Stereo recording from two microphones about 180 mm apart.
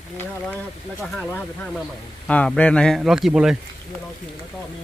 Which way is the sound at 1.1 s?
5° left (ahead or behind).